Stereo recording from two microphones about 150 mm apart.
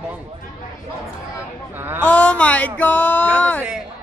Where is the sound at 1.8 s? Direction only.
15° right (ahead or behind).